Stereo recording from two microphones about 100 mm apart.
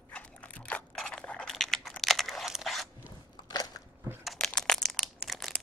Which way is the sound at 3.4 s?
40° left (ahead or behind).